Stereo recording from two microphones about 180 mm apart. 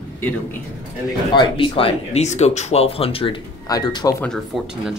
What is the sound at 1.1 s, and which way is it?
Speech, 25° left (ahead or behind).